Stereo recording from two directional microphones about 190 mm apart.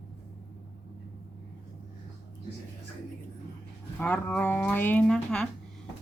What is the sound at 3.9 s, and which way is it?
Speech, 10° left (ahead or behind).